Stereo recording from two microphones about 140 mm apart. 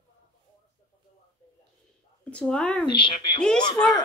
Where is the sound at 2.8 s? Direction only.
35° left (ahead or behind).